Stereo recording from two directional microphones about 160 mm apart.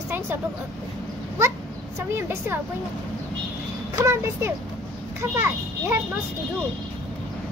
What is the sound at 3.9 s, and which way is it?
A child's voice, 20° right (ahead or behind).